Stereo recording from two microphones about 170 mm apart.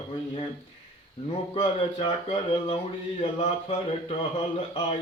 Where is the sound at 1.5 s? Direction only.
30° left (ahead or behind).